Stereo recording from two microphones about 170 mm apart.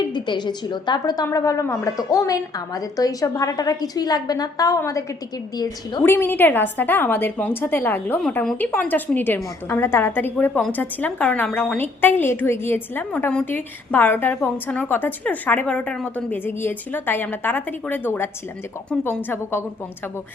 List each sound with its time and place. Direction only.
0.0 s a woman's voice: 25° left (ahead or behind)